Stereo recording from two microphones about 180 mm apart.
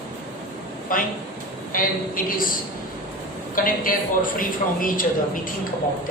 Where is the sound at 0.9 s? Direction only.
50° left (ahead or behind).